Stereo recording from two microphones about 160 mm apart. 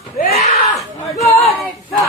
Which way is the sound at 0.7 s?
Centre (ahead or behind).